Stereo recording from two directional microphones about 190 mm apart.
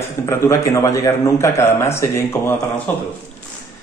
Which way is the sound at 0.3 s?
15° left (ahead or behind).